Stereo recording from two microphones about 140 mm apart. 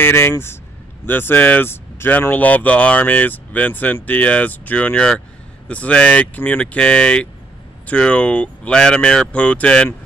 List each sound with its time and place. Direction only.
0.0 s speech: 15° left (ahead or behind)